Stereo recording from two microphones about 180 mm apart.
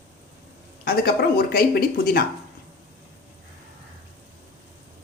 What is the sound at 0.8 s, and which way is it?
Speech, 60° left (ahead or behind).